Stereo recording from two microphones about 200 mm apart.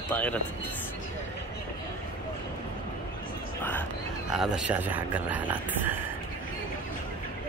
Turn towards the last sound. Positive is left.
turn(degrees=-10)  # may be behind; listen again after turning